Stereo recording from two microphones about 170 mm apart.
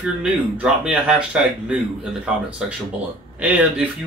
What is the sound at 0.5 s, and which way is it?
Speech, 5° right (ahead or behind).